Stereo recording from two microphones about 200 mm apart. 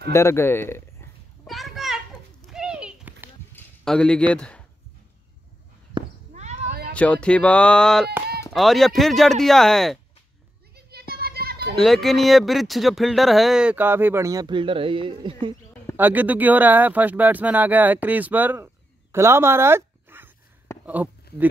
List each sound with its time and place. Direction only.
0.1 s a sound: 15° left (ahead or behind)
1.5 s children playing: centre (ahead or behind)
2.5 s horse: 5° right (ahead or behind)
3.5 s a sound: 5° left (ahead or behind)
4.3 s speech: 5° left (ahead or behind)
6.3 s a sound: 35° right (ahead or behind)
6.9 s speech: 5° left (ahead or behind)
10.9 s children playing: 50° right (ahead or behind)
11.7 s speech: centre (ahead or behind); by 15.3 s 25° right (ahead or behind)
16.0 s speech: 10° right (ahead or behind)